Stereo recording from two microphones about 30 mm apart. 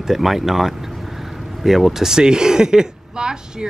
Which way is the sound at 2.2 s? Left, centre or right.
Right.